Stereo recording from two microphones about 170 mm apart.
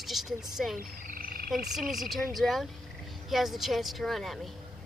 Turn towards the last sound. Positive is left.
turn(degrees=0)  # may be behind; listen again after turning